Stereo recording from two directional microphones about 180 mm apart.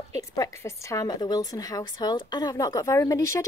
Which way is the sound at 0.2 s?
15° left (ahead or behind).